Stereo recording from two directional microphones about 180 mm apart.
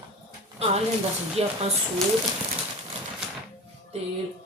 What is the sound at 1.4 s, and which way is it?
Speech, 35° right (ahead or behind).